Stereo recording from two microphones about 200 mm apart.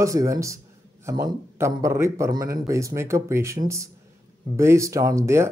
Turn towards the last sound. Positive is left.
turn(degrees=-15)  # may be behind; listen again after turning